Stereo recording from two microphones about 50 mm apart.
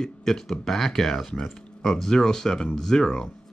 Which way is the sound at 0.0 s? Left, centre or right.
Centre.